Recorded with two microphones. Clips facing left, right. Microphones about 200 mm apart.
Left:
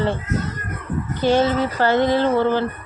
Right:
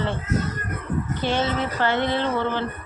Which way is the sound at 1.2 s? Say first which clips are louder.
Left 8 dB; 40° left (ahead or behind).